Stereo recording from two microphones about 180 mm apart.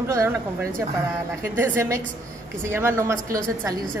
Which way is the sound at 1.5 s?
15° right (ahead or behind).